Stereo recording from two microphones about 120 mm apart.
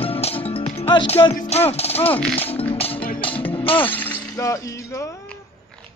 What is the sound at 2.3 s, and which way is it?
Music, 55° left (ahead or behind).